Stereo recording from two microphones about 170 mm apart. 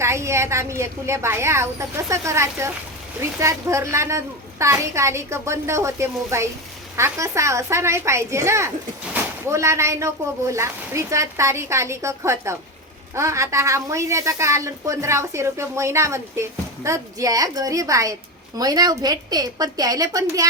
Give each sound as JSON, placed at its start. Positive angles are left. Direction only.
{"t": 0.0, "sound": "a woman's voice", "side_deg": -15}